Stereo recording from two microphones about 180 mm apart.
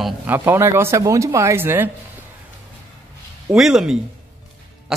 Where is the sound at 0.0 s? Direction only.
10° right (ahead or behind).